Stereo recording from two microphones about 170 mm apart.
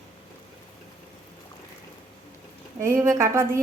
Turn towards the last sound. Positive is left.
turn(degrees=-15)  # may be behind; listen again after turning